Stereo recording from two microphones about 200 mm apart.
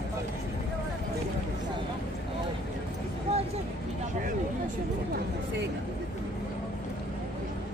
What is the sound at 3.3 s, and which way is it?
Vehicle, 30° right (ahead or behind).